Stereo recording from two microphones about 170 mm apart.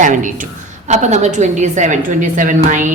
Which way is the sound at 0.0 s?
50° right (ahead or behind).